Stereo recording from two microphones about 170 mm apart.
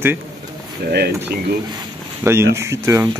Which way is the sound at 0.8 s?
70° right (ahead or behind).